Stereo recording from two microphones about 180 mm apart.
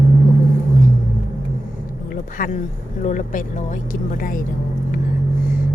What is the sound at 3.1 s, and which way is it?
Speech, 45° left (ahead or behind).